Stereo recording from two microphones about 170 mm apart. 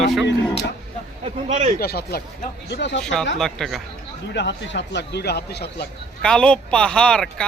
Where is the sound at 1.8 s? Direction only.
70° left (ahead or behind).